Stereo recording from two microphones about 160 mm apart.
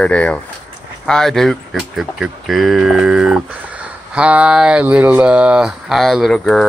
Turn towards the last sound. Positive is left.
turn(degrees=0)  # may be behind; listen again after turning